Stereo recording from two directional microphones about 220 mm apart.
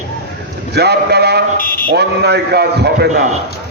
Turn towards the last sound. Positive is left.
turn(degrees=-45)  # may be behind; listen again after turning